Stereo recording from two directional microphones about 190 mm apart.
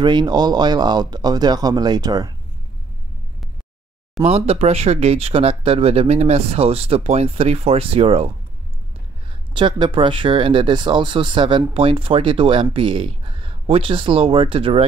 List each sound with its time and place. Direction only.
0.0 s speech: 25° right (ahead or behind)
4.2 s speech: 30° right (ahead or behind)
9.3 s speech: 25° right (ahead or behind)